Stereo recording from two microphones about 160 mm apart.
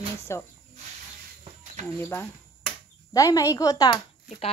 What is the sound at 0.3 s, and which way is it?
Speech, 15° left (ahead or behind).